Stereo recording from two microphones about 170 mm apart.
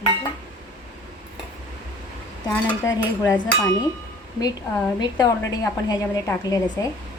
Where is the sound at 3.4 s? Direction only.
10° left (ahead or behind).